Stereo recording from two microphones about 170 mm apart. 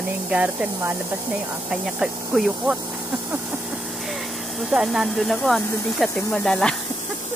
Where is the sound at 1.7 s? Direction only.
Centre (ahead or behind).